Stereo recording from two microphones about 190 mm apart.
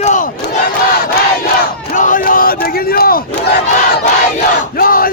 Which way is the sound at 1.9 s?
45° left (ahead or behind).